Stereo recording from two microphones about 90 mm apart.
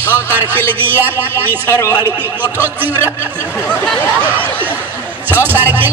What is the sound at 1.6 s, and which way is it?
Speech, 30° left (ahead or behind).